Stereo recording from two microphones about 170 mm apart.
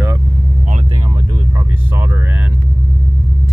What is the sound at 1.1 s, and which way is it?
Speech, 25° right (ahead or behind).